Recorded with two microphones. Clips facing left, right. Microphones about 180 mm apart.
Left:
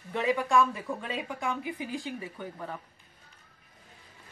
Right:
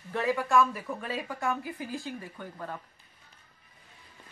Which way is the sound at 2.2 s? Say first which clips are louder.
Left 2 dB; 10° left (ahead or behind).